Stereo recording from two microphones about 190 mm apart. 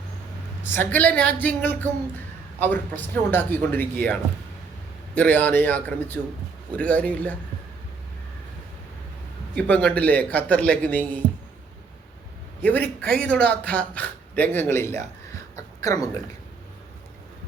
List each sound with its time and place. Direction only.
0.6 s speech: 10° left (ahead or behind)
2.6 s speech: 10° left (ahead or behind)
9.6 s speech: 10° left (ahead or behind)
12.6 s speech: 10° left (ahead or behind)
15.5 s a sound: 15° left (ahead or behind)